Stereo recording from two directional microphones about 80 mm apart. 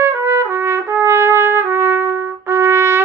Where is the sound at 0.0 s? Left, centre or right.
Right.